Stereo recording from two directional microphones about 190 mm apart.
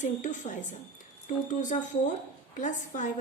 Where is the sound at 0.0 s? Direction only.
40° left (ahead or behind).